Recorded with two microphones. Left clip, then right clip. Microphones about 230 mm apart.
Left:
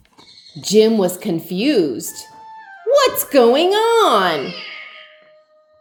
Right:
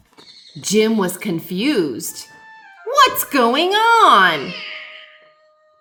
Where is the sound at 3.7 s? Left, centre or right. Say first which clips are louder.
Right 2 dB; centre.